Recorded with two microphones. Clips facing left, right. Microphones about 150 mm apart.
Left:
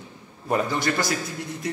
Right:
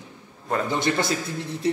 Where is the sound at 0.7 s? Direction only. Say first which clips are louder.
Right 1 dB; 20° right (ahead or behind).